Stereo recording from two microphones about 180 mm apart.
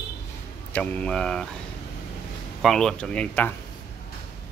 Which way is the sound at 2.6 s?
Centre (ahead or behind).